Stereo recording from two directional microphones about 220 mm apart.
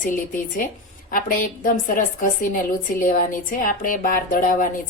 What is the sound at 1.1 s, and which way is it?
Speech, 40° left (ahead or behind).